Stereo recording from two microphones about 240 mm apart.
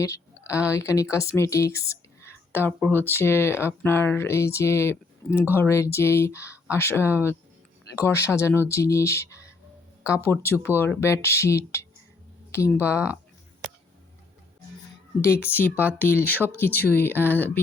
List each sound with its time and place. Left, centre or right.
0.0 s a woman's voice: centre
15.2 s a woman's voice: centre